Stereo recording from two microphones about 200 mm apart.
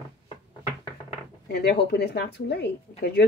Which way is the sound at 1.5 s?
55° left (ahead or behind).